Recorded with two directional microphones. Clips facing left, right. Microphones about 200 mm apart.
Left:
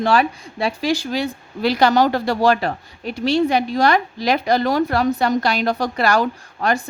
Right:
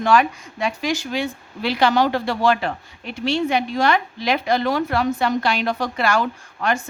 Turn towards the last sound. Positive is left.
turn(degrees=40)  # may be behind; listen again after turning